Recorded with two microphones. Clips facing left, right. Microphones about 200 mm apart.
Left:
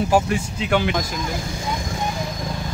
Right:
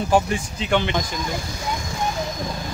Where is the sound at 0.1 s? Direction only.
5° left (ahead or behind).